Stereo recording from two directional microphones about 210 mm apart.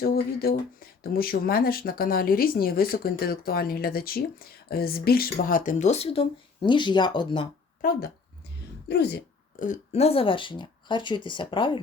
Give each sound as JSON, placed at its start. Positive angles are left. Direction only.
{"t": 0.0, "sound": "speech", "side_deg": 45}
{"t": 7.8, "sound": "speech", "side_deg": 45}